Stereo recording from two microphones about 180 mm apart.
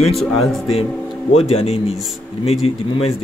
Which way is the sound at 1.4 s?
35° left (ahead or behind).